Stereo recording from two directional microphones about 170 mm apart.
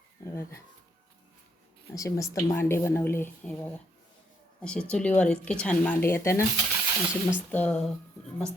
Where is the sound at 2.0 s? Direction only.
20° left (ahead or behind).